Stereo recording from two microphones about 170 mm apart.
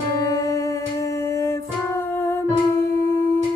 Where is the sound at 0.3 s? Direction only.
20° left (ahead or behind).